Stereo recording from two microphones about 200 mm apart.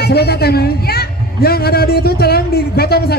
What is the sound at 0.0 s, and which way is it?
A man's voice, 55° left (ahead or behind).